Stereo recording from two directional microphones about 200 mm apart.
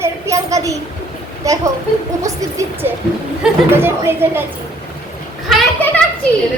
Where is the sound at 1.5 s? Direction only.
15° right (ahead or behind).